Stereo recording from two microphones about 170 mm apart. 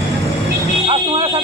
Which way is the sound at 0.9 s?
35° right (ahead or behind).